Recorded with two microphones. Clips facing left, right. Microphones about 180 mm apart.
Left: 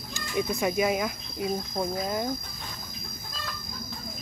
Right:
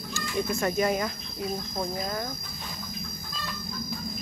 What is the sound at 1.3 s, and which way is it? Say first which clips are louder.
Cricket: left 3 dB; 15° left (ahead or behind).